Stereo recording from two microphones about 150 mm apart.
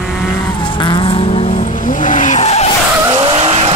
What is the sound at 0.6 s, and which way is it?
Vehicle, 30° left (ahead or behind).